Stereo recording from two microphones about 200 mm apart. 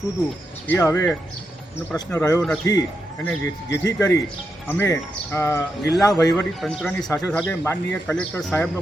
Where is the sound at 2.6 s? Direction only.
15° left (ahead or behind).